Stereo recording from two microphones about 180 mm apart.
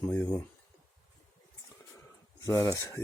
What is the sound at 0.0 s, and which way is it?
Speech, 10° left (ahead or behind).